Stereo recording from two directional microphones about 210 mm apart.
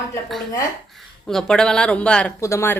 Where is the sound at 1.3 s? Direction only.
5° left (ahead or behind).